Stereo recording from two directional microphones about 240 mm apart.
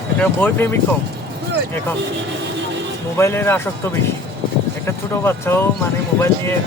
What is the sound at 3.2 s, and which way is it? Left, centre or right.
Speech, centre.